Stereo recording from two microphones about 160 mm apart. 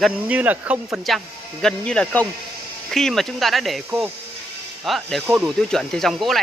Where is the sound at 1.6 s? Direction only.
5° left (ahead or behind).